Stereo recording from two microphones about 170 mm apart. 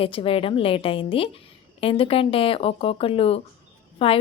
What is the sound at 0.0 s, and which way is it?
A woman's voice, 30° left (ahead or behind).